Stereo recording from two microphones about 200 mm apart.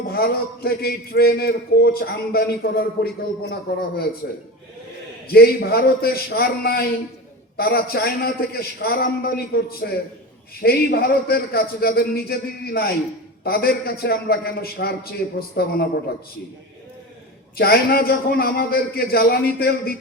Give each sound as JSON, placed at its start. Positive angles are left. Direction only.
{"t": 0.1, "sound": "a man's voice", "side_deg": 50}
{"t": 5.3, "sound": "a man's voice", "side_deg": 50}
{"t": 17.6, "sound": "a man's voice", "side_deg": 50}